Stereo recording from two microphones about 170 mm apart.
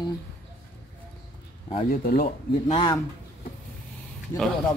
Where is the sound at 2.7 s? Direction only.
30° left (ahead or behind).